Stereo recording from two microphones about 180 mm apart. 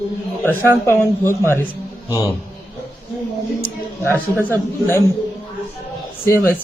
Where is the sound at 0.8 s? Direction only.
15° left (ahead or behind).